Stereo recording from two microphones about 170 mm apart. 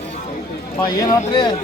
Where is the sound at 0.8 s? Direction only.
25° left (ahead or behind).